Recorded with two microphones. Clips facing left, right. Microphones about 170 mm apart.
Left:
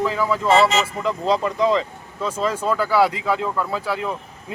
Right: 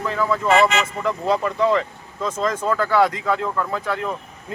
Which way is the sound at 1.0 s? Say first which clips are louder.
Right 1 dB; 15° left (ahead or behind).